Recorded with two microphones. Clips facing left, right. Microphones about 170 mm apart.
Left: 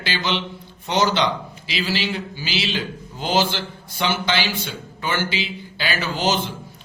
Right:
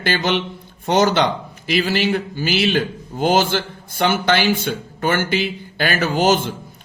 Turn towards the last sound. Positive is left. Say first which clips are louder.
# right 6 dB
turn(degrees=-50)  # may be behind; listen again after turning